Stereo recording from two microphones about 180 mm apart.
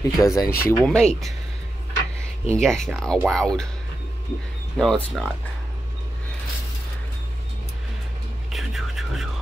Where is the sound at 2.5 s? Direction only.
5° left (ahead or behind).